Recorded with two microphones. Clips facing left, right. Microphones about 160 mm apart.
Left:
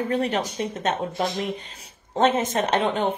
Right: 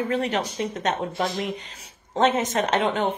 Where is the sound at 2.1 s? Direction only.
30° left (ahead or behind).